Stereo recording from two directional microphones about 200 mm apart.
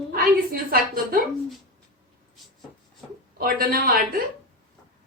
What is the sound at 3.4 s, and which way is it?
Speech, 45° right (ahead or behind).